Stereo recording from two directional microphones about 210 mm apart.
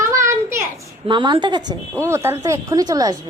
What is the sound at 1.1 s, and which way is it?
A woman's voice, 20° right (ahead or behind).